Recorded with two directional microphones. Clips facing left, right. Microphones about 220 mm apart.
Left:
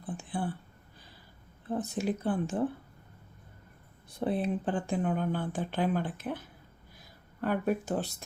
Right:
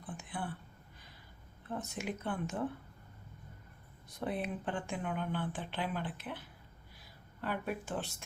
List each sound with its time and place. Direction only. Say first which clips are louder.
0.0 s a sound: left 7 dB; 30° left (ahead or behind)
1.6 s speech: left 8 dB; 35° left (ahead or behind)
4.1 s speech: left 7 dB; 30° left (ahead or behind)
7.4 s speech: left 8 dB; 45° left (ahead or behind)